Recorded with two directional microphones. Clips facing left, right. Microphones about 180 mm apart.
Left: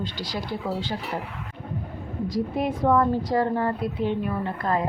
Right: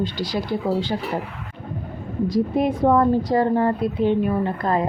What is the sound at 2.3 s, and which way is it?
A woman's voice, 20° right (ahead or behind).